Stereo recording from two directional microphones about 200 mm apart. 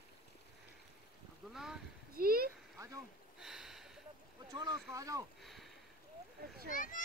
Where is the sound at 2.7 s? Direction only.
15° right (ahead or behind).